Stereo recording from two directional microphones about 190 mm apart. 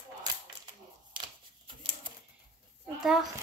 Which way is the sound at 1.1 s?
25° right (ahead or behind).